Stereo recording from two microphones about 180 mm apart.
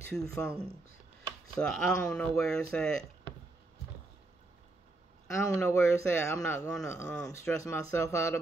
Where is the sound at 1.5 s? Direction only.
5° left (ahead or behind).